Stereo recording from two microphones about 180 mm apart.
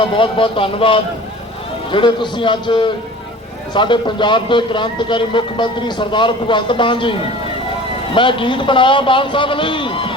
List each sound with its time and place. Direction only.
0.0 s speech: 30° left (ahead or behind)